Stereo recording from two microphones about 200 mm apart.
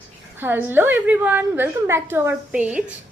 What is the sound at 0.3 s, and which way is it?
A woman's voice, 10° right (ahead or behind).